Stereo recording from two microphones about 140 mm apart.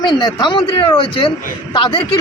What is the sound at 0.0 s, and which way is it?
Speech, 30° left (ahead or behind).